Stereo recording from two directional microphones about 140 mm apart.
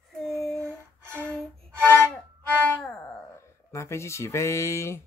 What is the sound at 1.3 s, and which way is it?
Music, 10° left (ahead or behind).